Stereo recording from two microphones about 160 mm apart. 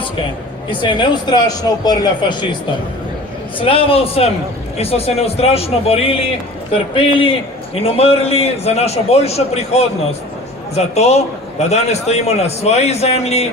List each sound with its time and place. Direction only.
0.8 s speech: 30° left (ahead or behind)
3.6 s a man's voice: 35° left (ahead or behind)